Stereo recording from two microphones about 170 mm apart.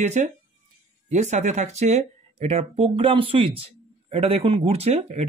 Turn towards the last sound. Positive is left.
turn(degrees=-40)  # may be behind; listen again after turning